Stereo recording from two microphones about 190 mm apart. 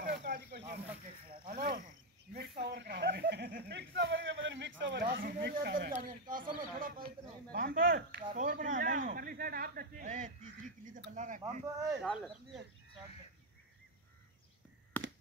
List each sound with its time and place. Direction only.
0.0 s snake: 60° right (ahead or behind)
1.5 s cricket: 45° right (ahead or behind)
2.6 s speech: 60° right (ahead or behind)
5.0 s speech: 50° right (ahead or behind)
11.6 s speech: 15° right (ahead or behind)
12.0 s speech: centre (ahead or behind)